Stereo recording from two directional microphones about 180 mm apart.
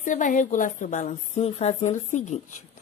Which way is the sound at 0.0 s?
45° left (ahead or behind).